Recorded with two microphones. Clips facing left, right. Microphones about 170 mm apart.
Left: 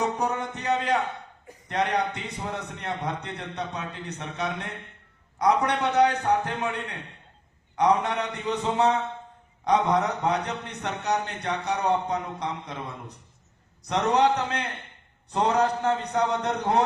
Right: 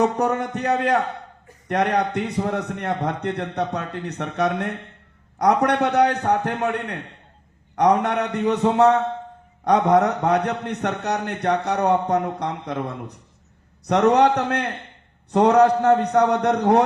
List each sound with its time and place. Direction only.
0.0 s a man's voice: 65° right (ahead or behind)